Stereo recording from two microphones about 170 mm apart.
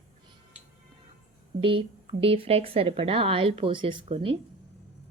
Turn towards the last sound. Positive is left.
turn(degrees=-30)  # may be behind; listen again after turning